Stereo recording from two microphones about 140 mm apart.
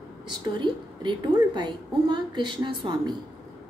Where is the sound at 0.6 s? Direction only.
35° right (ahead or behind).